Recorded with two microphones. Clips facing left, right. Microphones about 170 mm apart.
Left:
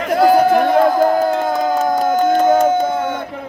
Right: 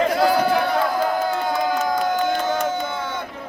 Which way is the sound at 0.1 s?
45° left (ahead or behind).